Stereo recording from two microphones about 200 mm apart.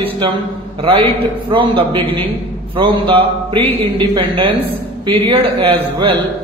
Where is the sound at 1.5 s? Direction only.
25° right (ahead or behind).